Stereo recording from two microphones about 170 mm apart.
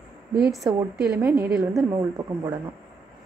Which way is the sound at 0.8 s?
5° right (ahead or behind).